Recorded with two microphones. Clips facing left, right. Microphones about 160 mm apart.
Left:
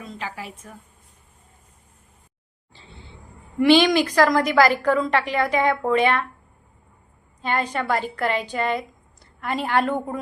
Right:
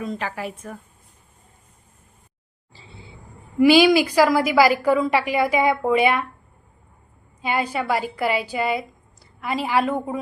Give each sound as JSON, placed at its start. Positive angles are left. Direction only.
{"t": 0.0, "sound": "a woman's voice", "side_deg": -55}
{"t": 2.7, "sound": "a sound", "side_deg": 0}
{"t": 3.6, "sound": "a woman's voice", "side_deg": -5}
{"t": 7.4, "sound": "a woman's voice", "side_deg": -10}